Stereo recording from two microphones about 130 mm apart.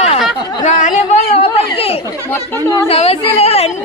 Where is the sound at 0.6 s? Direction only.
70° left (ahead or behind); by 2.0 s 50° left (ahead or behind).